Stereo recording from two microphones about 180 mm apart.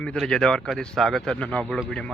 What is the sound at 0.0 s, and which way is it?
Speech, 5° left (ahead or behind).